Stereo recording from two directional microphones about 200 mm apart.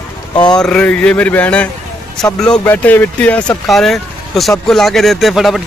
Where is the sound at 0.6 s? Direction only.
5° left (ahead or behind).